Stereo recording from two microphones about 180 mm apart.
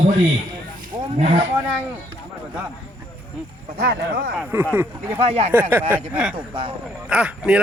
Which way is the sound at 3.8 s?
65° right (ahead or behind).